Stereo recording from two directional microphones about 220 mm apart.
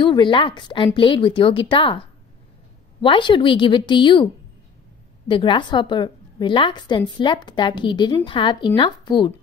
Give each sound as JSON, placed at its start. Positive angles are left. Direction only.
{"t": 0.0, "sound": "a woman's voice", "side_deg": 20}
{"t": 5.3, "sound": "a woman's voice", "side_deg": 20}